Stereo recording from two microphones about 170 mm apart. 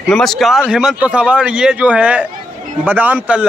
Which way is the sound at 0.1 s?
Centre (ahead or behind).